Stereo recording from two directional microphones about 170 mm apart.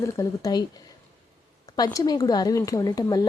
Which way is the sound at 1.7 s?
20° left (ahead or behind).